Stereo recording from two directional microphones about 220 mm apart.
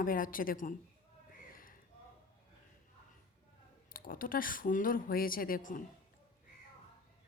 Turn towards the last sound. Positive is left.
turn(degrees=35)  # may be behind; listen again after turning